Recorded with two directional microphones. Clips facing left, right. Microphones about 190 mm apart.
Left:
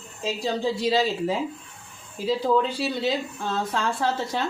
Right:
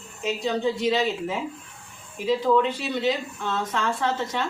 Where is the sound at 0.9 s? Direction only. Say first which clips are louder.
Left 1 dB; 35° left (ahead or behind).